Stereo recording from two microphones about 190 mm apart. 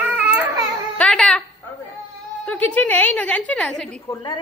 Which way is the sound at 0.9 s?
5° left (ahead or behind).